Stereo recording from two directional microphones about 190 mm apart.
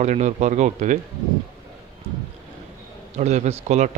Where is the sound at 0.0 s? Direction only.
40° right (ahead or behind).